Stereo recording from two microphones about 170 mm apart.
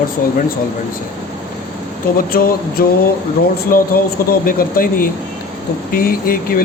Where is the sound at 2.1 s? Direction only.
60° left (ahead or behind).